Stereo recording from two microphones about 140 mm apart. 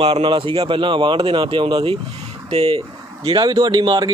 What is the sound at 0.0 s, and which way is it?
Speech, 35° right (ahead or behind).